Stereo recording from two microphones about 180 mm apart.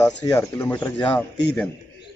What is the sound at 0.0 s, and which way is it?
Speech, 15° left (ahead or behind).